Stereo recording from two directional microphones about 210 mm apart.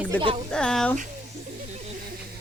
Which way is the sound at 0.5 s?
5° left (ahead or behind).